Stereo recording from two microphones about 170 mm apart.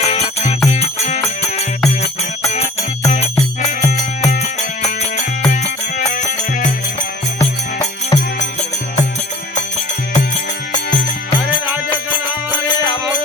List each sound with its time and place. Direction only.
0.0 s music: 35° left (ahead or behind)
3.1 s music: 40° left (ahead or behind)
6.0 s music: 45° left (ahead or behind)
7.3 s music: 20° left (ahead or behind)
12.5 s music: 25° left (ahead or behind)